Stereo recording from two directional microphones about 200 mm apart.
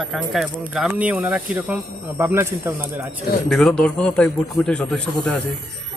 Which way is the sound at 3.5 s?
5° left (ahead or behind).